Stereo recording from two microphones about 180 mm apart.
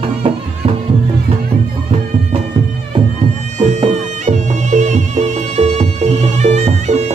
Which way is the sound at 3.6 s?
40° right (ahead or behind).